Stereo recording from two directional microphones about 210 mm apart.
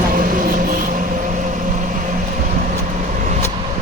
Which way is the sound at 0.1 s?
40° right (ahead or behind).